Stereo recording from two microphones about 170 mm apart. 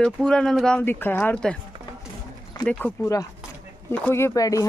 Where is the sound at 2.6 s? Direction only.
10° left (ahead or behind).